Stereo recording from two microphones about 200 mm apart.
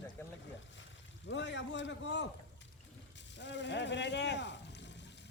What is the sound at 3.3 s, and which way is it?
Speech, 60° left (ahead or behind).